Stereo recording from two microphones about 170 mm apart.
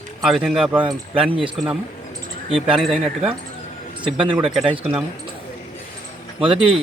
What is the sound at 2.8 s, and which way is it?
Speech, centre (ahead or behind).